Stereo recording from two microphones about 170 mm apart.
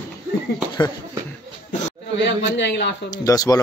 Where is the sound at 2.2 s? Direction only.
90° left.